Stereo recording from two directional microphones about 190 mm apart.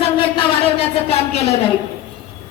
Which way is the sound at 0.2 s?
30° left (ahead or behind).